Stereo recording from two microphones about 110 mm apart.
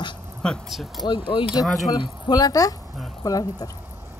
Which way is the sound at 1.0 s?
50° left (ahead or behind).